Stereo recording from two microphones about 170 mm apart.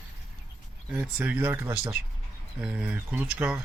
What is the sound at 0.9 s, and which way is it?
Speech, 10° right (ahead or behind).